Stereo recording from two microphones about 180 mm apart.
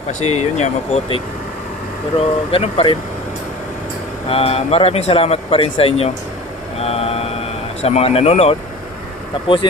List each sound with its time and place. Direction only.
0.1 s speech: 40° left (ahead or behind)
2.1 s speech: 35° left (ahead or behind)
4.3 s speech: 35° left (ahead or behind)
6.7 s mantra: 35° left (ahead or behind)
7.8 s speech: 35° left (ahead or behind)